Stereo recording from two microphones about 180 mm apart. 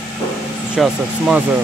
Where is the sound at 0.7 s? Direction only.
5° right (ahead or behind).